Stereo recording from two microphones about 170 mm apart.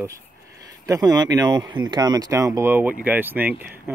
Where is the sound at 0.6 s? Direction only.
20° right (ahead or behind).